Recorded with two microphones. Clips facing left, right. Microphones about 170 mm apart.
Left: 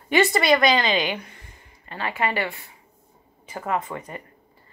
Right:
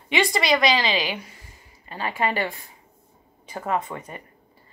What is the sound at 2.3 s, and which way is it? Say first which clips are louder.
Speech: even; 40° right (ahead or behind).